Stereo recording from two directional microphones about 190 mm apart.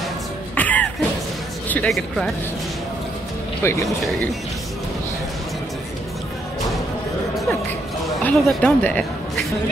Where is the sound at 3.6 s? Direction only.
15° left (ahead or behind).